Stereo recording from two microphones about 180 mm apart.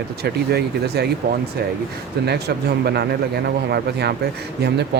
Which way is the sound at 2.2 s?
65° right (ahead or behind).